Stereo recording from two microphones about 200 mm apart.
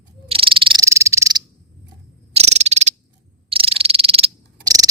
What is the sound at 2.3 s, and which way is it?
Cricket, 35° right (ahead or behind).